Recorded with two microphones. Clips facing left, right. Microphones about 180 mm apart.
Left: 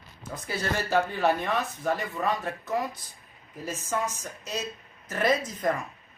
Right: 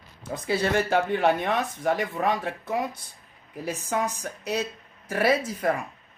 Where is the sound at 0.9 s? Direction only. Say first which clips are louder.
Right 2 dB; 60° right (ahead or behind); by 2.6 s 85° right.